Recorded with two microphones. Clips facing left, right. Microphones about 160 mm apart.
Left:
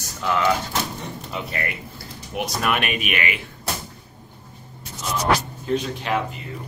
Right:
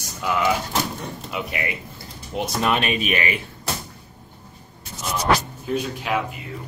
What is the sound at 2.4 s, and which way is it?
Speech, 25° right (ahead or behind).